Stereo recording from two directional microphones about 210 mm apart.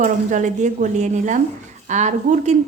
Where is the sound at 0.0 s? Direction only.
35° right (ahead or behind).